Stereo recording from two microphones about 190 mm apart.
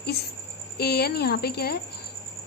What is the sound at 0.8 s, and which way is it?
Speech, 55° left (ahead or behind).